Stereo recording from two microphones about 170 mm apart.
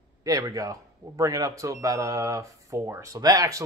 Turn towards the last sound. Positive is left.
turn(degrees=-20)  # may be behind; listen again after turning